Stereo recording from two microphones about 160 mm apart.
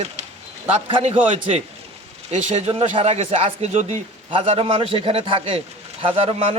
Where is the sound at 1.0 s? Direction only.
40° right (ahead or behind).